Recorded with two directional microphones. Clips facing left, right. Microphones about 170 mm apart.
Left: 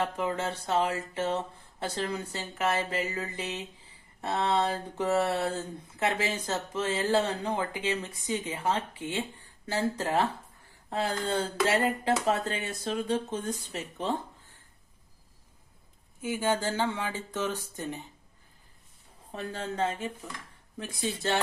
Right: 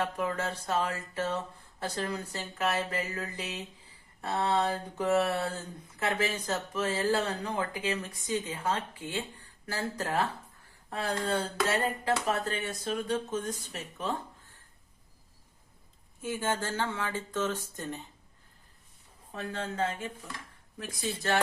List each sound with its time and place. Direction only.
0.0 s speech: 20° left (ahead or behind)
16.2 s speech: 10° left (ahead or behind)
19.3 s speech: 30° left (ahead or behind)